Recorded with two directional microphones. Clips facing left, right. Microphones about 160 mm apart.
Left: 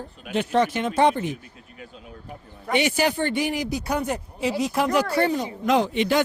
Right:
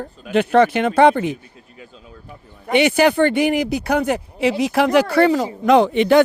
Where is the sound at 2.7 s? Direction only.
65° right (ahead or behind); by 5.4 s 90° right.